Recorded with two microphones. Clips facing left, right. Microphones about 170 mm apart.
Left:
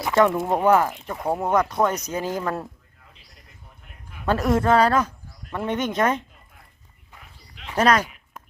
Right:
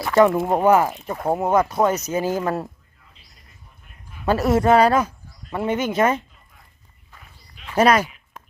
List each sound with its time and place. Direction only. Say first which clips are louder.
0.3 s speech: right 2 dB; 10° right (ahead or behind)
4.3 s speech: right 3 dB; 5° right (ahead or behind)
7.8 s a sound: right 3 dB; 10° right (ahead or behind)